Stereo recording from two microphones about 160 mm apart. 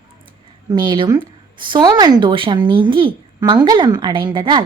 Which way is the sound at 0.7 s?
30° right (ahead or behind).